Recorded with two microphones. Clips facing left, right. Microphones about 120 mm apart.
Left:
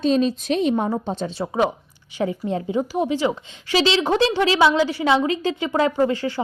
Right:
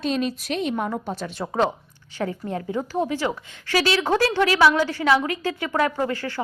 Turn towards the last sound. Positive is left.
turn(degrees=15)  # may be behind; listen again after turning